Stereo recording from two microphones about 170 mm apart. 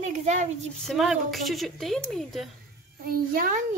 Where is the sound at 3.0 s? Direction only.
60° right (ahead or behind).